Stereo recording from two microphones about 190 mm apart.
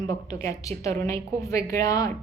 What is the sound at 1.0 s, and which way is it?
A woman's voice, 15° left (ahead or behind).